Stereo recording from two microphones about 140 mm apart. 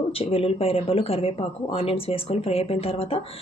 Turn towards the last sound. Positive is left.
turn(degrees=45)  # may be behind; listen again after turning